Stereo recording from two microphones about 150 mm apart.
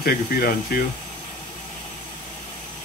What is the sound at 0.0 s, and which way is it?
Speech, 90° left.